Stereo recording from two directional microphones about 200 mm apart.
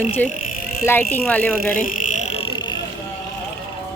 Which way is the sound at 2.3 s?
25° left (ahead or behind).